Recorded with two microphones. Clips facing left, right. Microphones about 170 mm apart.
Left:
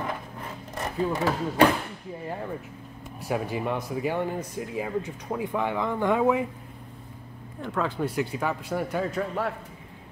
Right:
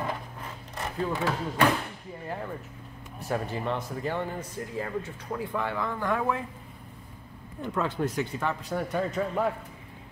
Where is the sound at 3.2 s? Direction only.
10° left (ahead or behind).